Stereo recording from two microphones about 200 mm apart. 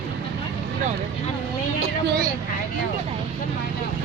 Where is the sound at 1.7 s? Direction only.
50° right (ahead or behind).